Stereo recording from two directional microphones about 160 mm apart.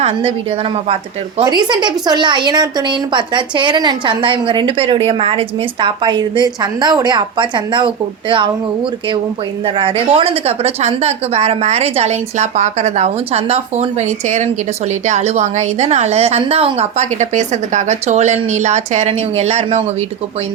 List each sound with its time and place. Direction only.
0.0 s a woman's voice: 35° right (ahead or behind)
1.4 s a woman's voice: 30° right (ahead or behind)
9.6 s a woman's voice: 35° right (ahead or behind)